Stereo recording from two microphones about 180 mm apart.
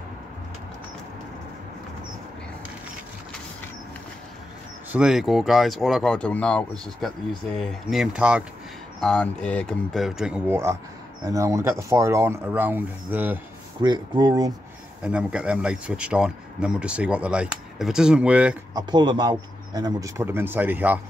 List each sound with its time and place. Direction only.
4.9 s speech: 5° right (ahead or behind)
9.0 s speech: 5° left (ahead or behind)
13.7 s speech: 25° right (ahead or behind)
15.0 s speech: 5° right (ahead or behind)
18.8 s speech: 25° right (ahead or behind)